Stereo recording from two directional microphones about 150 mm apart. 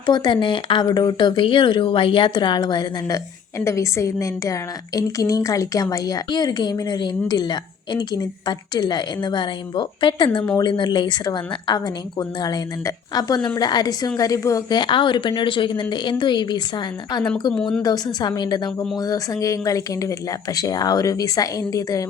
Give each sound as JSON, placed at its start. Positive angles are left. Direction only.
{"t": 0.0, "sound": "a woman's voice", "side_deg": 30}
{"t": 17.5, "sound": "speech", "side_deg": 5}
{"t": 17.8, "sound": "a woman's voice", "side_deg": 25}